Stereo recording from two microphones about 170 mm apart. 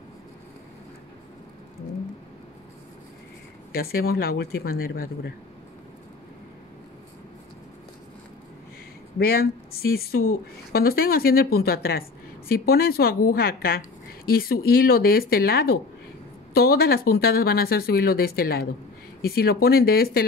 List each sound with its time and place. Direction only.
3.7 s a woman's voice: 65° left (ahead or behind)
9.2 s a woman's voice: 60° left (ahead or behind)